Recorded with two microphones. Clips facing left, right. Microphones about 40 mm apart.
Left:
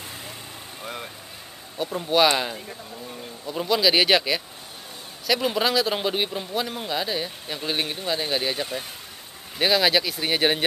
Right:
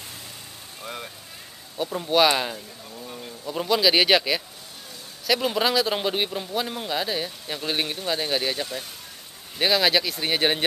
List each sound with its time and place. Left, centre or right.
0.8 s vehicle: centre
1.8 s speech: centre